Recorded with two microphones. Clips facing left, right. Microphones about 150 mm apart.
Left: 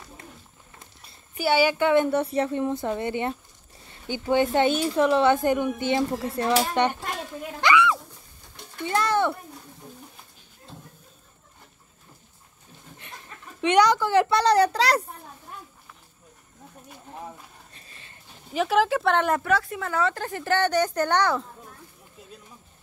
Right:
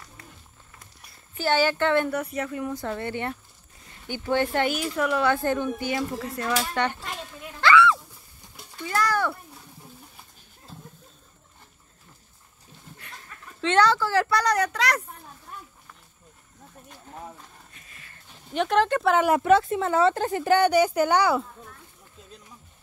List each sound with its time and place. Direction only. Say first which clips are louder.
1.3 s speech: left 2 dB; 10° left (ahead or behind)
2.0 s speech: left 5 dB; 30° left (ahead or behind)
7.6 s a sound: right 2 dB; 15° left (ahead or behind)
8.8 s a child's voice: left 2 dB; 25° left (ahead or behind)
13.6 s speech: left 2 dB; 15° left (ahead or behind); by 15.0 s 30° left (ahead or behind)
17.7 s a sound: left 1 dB; 30° left (ahead or behind)
18.5 s speech: even; 5° left (ahead or behind)
19.4 s a woman's voice: right 6 dB; 25° right (ahead or behind)